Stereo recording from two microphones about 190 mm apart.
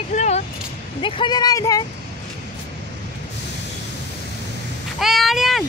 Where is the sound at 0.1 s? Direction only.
40° left (ahead or behind).